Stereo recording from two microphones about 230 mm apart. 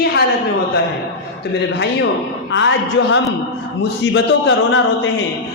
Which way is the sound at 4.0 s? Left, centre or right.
Left.